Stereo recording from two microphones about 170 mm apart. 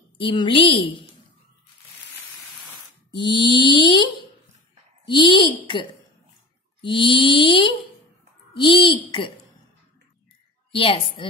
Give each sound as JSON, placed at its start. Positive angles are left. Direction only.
{"t": 0.2, "sound": "a woman's voice", "side_deg": 30}
{"t": 3.2, "sound": "mantra", "side_deg": 30}
{"t": 6.8, "sound": "mantra", "side_deg": 30}
{"t": 10.7, "sound": "a woman's voice", "side_deg": 35}